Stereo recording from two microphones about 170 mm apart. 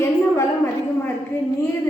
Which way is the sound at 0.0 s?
15° left (ahead or behind).